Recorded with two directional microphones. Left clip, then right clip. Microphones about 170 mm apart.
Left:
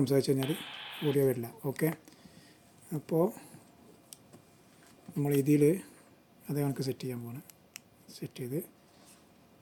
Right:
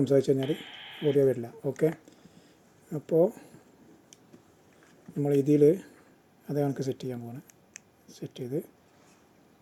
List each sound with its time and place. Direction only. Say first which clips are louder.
0.0 s speech: right 5 dB; 15° left (ahead or behind)
0.3 s speech: right 3 dB; 45° left (ahead or behind)
1.1 s speech: right 4 dB; 15° left (ahead or behind)
5.4 s speech: right 5 dB; 10° left (ahead or behind)